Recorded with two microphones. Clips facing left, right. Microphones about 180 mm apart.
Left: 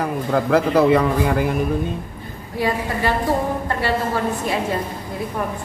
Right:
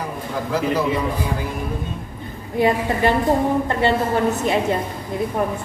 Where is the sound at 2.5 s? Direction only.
20° right (ahead or behind).